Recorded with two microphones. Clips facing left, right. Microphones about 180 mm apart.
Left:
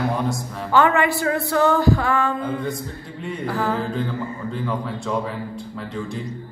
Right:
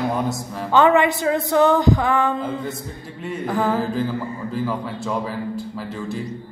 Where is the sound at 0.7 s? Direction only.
20° right (ahead or behind).